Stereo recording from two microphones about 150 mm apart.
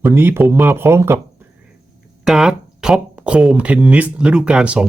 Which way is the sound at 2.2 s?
5° right (ahead or behind).